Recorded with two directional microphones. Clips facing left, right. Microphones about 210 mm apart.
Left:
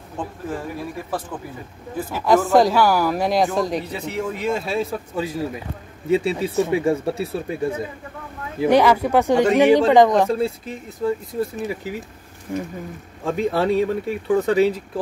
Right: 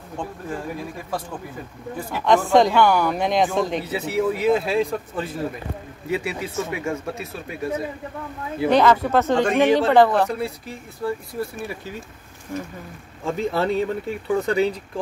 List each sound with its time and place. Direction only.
2.0 s speech: 5° left (ahead or behind)
6.0 s speech: 25° left (ahead or behind)
8.5 s speech: 10° left (ahead or behind)
13.2 s speech: centre (ahead or behind)